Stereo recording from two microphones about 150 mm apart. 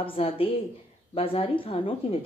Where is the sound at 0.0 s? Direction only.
35° left (ahead or behind).